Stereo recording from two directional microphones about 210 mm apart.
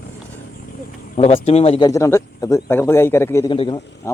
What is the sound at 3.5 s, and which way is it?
Speech, 25° left (ahead or behind).